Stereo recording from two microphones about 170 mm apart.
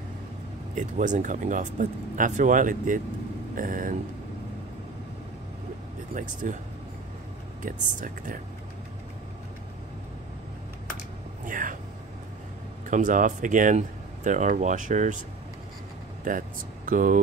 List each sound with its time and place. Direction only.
0.7 s speech: 50° right (ahead or behind)
6.4 s speech: 50° right (ahead or behind)
7.6 s speech: 50° right (ahead or behind)
11.4 s a sound: 50° right (ahead or behind)
12.8 s speech: 50° right (ahead or behind)
16.3 s speech: 55° right (ahead or behind)